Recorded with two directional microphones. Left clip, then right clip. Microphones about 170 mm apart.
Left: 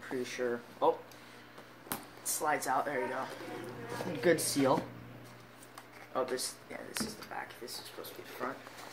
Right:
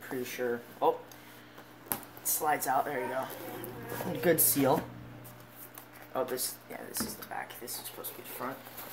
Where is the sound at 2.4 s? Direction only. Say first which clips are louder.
Right 3 dB; 45° right (ahead or behind).